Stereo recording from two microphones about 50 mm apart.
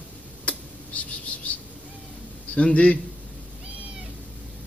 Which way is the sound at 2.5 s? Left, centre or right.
Left.